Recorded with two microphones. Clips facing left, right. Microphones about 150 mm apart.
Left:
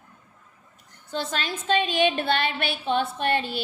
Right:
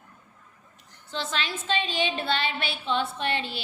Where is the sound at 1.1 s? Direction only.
45° left (ahead or behind).